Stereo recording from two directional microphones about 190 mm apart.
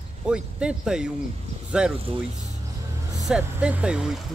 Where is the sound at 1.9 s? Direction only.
30° right (ahead or behind).